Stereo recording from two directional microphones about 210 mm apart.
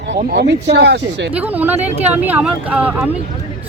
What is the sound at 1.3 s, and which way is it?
Speech, 10° right (ahead or behind).